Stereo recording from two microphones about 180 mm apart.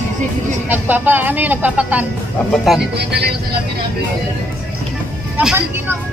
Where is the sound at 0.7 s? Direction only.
10° right (ahead or behind).